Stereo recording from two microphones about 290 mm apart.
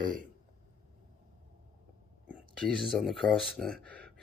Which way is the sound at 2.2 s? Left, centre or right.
Centre.